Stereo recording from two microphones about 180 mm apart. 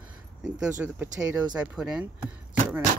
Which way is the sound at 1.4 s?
5° right (ahead or behind).